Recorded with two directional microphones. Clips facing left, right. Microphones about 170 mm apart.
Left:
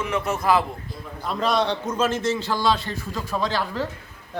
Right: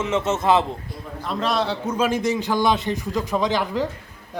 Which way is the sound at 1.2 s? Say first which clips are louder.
Left 1 dB; centre (ahead or behind).